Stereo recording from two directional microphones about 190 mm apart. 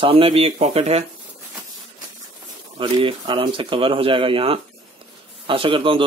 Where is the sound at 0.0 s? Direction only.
30° right (ahead or behind).